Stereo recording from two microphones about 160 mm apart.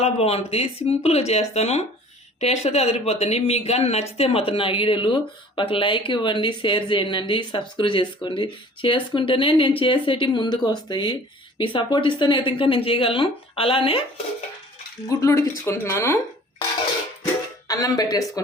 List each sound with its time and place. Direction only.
0.0 s speech: 40° left (ahead or behind)
15.2 s speech: 20° left (ahead or behind)
17.7 s speech: 20° left (ahead or behind)